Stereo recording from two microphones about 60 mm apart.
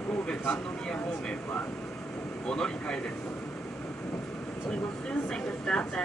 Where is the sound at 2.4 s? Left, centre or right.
Centre.